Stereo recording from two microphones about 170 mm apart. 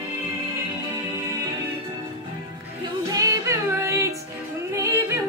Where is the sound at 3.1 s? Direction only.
20° right (ahead or behind).